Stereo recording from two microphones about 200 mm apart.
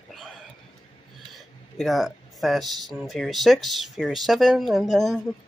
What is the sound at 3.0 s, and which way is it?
Speech, centre (ahead or behind).